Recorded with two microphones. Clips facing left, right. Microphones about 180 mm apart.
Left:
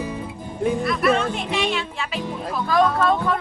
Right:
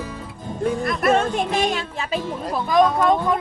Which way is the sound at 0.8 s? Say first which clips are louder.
Right 2 dB; 45° right (ahead or behind).